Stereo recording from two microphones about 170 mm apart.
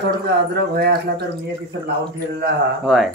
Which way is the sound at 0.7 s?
70° right (ahead or behind).